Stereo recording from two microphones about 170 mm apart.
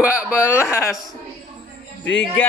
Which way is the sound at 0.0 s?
5° right (ahead or behind).